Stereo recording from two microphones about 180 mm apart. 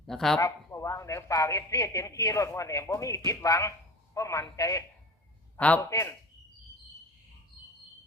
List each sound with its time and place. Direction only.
0.1 s speech: centre (ahead or behind)
0.3 s a man's voice: 15° left (ahead or behind)
5.5 s a man's voice: 10° left (ahead or behind)